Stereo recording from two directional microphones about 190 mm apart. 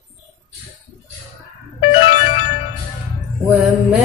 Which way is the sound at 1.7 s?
30° left (ahead or behind).